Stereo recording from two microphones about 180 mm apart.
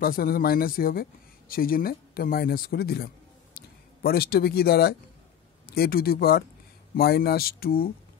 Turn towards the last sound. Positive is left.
turn(degrees=55)  # may be behind; listen again after turning